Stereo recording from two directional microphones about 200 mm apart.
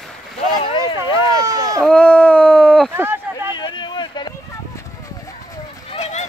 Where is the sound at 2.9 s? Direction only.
10° right (ahead or behind).